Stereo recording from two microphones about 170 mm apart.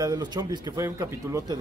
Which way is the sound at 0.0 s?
20° right (ahead or behind).